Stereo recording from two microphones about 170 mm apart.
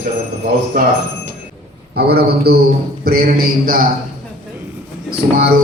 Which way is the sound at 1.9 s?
70° right (ahead or behind).